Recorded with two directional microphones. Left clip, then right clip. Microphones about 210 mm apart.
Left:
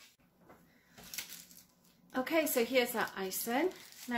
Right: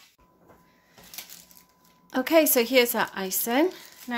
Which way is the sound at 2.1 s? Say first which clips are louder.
Right 11 dB; 50° right (ahead or behind).